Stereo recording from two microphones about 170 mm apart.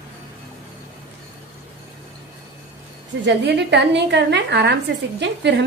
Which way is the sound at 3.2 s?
90° right.